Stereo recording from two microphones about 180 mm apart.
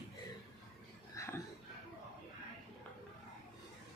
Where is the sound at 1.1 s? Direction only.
15° left (ahead or behind).